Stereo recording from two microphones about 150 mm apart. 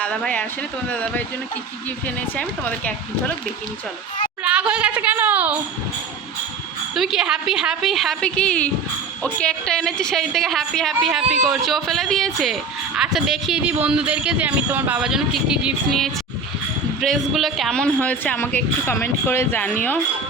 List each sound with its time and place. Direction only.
0.0 s speech: 10° left (ahead or behind)
2.3 s speech: 10° left (ahead or behind)
4.4 s speech: 5° right (ahead or behind)
6.9 s a woman's voice: centre (ahead or behind)